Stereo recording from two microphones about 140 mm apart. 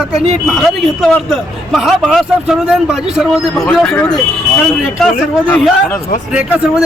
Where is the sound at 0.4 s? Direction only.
Centre (ahead or behind).